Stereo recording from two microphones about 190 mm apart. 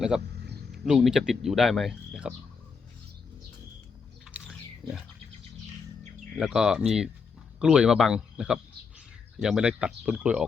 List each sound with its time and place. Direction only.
0.9 s speech: centre (ahead or behind)
4.3 s a sound: 5° right (ahead or behind)
4.8 s speech: 25° right (ahead or behind)
6.3 s speech: 5° right (ahead or behind)